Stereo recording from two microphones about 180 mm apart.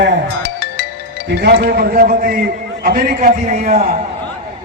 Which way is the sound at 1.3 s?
65° right (ahead or behind).